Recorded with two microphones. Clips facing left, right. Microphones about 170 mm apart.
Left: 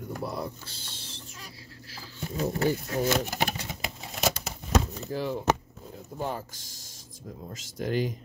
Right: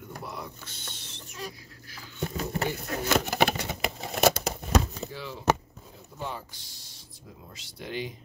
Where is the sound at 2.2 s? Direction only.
70° right (ahead or behind).